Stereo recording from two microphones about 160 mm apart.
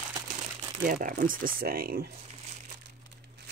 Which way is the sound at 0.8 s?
60° right (ahead or behind).